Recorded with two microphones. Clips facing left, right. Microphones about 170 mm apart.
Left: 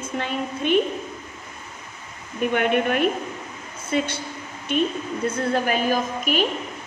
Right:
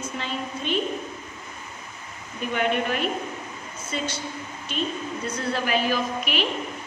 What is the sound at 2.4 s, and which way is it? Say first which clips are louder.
A woman's voice: left 4 dB; 55° left (ahead or behind).